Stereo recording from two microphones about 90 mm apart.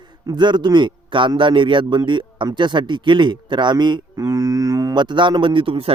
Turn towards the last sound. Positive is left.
turn(degrees=-85)